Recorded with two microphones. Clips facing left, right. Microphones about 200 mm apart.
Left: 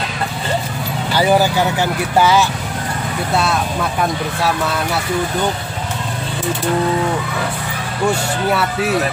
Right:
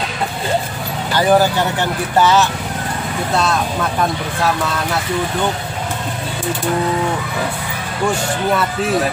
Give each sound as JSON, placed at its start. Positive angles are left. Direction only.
{"t": 1.1, "sound": "speech", "side_deg": 10}